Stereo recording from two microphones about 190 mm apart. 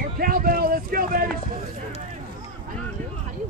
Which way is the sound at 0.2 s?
50° right (ahead or behind).